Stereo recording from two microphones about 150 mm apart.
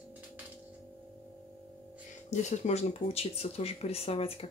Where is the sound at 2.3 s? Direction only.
50° left (ahead or behind).